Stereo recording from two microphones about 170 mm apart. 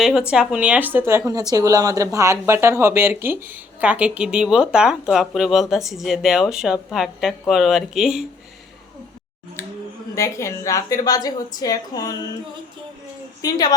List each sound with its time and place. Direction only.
0.0 s a woman's voice: 5° right (ahead or behind)
10.2 s a woman's voice: 20° left (ahead or behind)
13.4 s a woman's voice: 25° left (ahead or behind)